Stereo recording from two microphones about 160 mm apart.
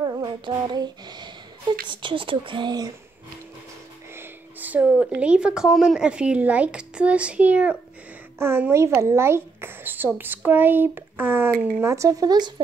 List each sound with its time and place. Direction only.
0.0 s speech: 25° right (ahead or behind)
4.2 s a sound: 10° right (ahead or behind)
5.0 s speech: 5° right (ahead or behind); by 12.6 s 25° right (ahead or behind)